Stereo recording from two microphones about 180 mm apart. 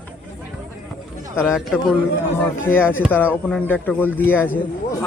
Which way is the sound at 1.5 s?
Centre (ahead or behind).